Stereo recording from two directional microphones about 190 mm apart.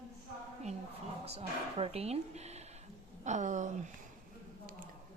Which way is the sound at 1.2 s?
30° right (ahead or behind).